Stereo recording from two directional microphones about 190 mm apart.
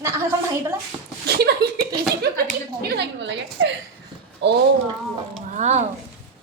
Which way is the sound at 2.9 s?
65° right (ahead or behind).